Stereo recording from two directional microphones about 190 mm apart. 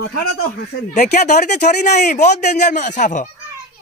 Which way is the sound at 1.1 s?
40° left (ahead or behind).